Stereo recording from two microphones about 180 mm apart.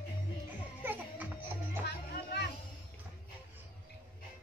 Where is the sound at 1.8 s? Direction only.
65° left (ahead or behind).